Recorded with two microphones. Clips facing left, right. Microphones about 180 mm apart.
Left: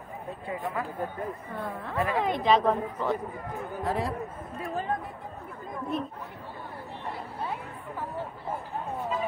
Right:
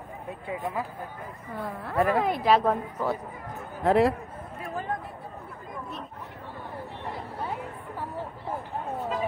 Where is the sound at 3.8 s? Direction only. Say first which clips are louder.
Right 10 dB; 75° right (ahead or behind).